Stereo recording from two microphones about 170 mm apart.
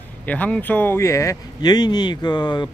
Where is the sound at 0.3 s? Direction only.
10° left (ahead or behind).